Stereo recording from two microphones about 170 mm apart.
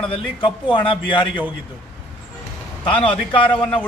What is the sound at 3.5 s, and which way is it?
Speech, 5° left (ahead or behind).